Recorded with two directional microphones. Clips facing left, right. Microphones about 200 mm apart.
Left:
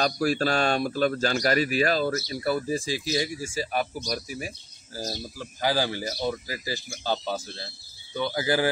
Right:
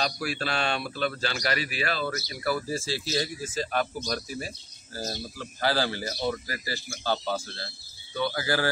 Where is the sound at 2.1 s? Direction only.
25° left (ahead or behind).